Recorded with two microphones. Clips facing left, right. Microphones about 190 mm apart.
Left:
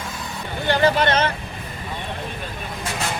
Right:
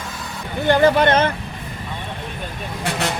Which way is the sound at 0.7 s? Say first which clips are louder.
Right 4 dB; 50° right (ahead or behind).